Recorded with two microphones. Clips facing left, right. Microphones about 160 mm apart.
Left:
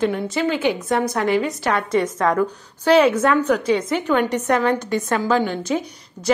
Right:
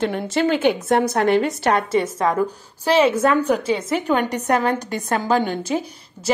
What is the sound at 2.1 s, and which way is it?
A woman's voice, 25° right (ahead or behind).